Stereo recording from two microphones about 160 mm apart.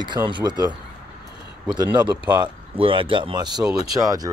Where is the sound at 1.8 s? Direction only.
30° right (ahead or behind).